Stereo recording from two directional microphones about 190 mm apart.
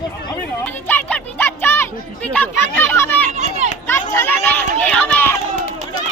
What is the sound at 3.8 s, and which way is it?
Speech, 10° left (ahead or behind).